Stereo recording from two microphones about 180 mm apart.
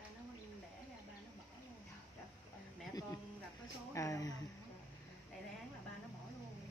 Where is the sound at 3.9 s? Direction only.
20° left (ahead or behind).